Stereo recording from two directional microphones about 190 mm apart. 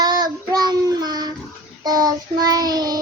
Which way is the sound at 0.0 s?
20° right (ahead or behind).